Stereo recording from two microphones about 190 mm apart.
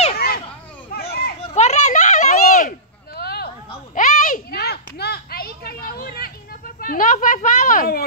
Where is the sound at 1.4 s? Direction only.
35° left (ahead or behind); by 3.4 s 55° left (ahead or behind).